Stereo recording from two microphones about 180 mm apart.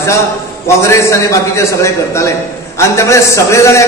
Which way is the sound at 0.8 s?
15° left (ahead or behind).